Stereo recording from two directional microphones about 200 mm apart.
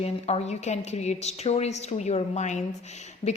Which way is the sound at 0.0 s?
30° left (ahead or behind).